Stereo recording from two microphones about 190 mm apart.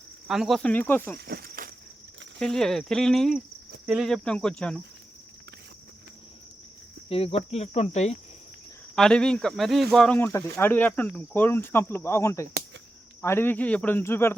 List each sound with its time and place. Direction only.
0.3 s speech: centre (ahead or behind)
1.2 s cricket: 55° right (ahead or behind)
2.4 s speech: centre (ahead or behind)
7.1 s cricket: 30° left (ahead or behind)
9.0 s speech: 5° left (ahead or behind)